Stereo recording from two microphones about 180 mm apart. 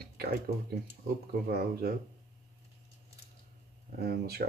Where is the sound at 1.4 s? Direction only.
55° right (ahead or behind).